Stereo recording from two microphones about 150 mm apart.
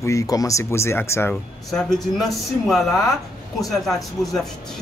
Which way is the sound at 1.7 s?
Centre (ahead or behind).